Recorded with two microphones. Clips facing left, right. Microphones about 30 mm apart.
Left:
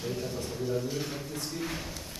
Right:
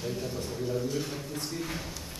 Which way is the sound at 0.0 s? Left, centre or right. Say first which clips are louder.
Even; centre.